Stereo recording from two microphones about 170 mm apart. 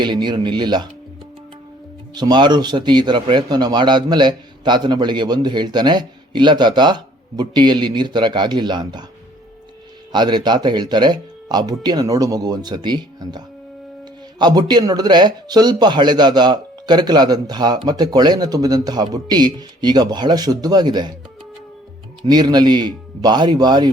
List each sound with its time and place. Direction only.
0.0 s a man's voice: 25° right (ahead or behind)
2.1 s a man's voice: 25° right (ahead or behind)
10.1 s a man's voice: 25° right (ahead or behind)
22.3 s a man's voice: 25° right (ahead or behind)